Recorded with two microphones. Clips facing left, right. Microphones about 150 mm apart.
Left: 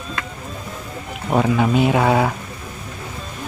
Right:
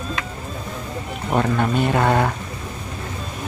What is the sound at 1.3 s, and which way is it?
Speech, 5° left (ahead or behind).